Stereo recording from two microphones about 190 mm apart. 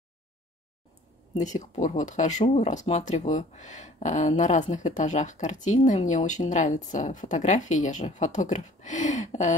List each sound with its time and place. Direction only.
1.3 s speech: 40° left (ahead or behind)